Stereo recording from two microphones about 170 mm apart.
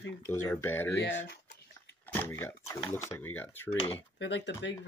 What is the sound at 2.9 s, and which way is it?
Speech, 15° left (ahead or behind).